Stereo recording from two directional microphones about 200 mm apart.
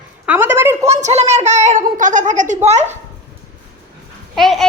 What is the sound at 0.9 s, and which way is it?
A child's voice, 30° right (ahead or behind).